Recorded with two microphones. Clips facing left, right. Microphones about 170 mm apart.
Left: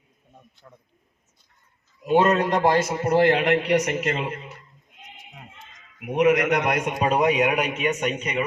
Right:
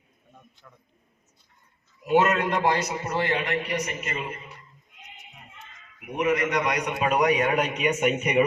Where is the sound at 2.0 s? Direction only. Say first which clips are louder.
Left 3 dB; 30° left (ahead or behind); by 4.3 s 80° left.